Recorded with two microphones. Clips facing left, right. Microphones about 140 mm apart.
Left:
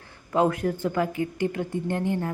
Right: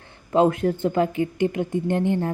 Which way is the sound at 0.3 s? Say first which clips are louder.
Right 4 dB; 25° right (ahead or behind).